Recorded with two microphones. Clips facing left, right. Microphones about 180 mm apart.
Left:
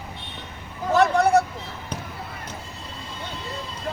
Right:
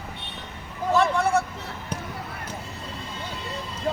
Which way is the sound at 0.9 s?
40° left (ahead or behind).